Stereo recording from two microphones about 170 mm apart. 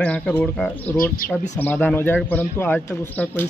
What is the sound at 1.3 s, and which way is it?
A man's voice, 10° left (ahead or behind).